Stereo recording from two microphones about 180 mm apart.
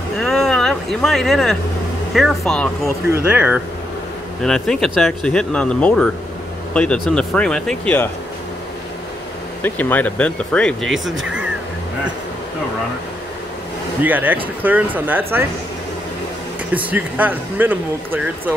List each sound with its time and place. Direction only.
0.2 s vehicle: centre (ahead or behind)
2.1 s speech: centre (ahead or behind)
3.1 s speech: 10° right (ahead or behind)
4.4 s speech: 5° left (ahead or behind)
9.6 s speech: 10° left (ahead or behind)
14.0 s speech: 10° right (ahead or behind)
16.7 s speech: 10° right (ahead or behind)